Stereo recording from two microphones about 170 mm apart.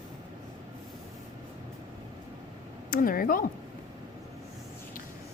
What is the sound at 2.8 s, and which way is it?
Speech, 55° left (ahead or behind).